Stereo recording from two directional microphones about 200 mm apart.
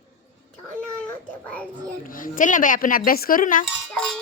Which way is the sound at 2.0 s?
45° left (ahead or behind).